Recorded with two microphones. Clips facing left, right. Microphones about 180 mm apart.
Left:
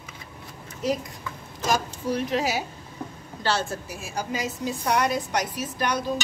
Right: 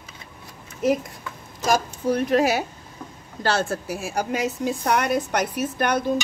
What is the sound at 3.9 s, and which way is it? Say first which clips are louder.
A woman's voice: right 5 dB; 65° right (ahead or behind).